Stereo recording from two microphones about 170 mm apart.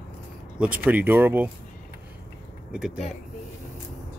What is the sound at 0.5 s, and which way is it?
Speech, 10° right (ahead or behind).